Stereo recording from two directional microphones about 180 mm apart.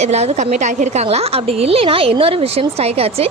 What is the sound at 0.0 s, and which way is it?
A woman's voice, 40° right (ahead or behind).